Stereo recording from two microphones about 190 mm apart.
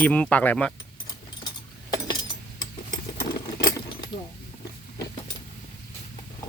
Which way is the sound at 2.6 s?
20° left (ahead or behind).